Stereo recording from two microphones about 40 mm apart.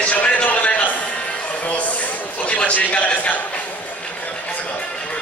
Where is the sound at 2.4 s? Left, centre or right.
Left.